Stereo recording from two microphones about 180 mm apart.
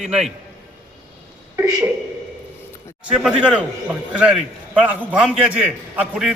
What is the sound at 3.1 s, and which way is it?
A man's voice, 5° right (ahead or behind).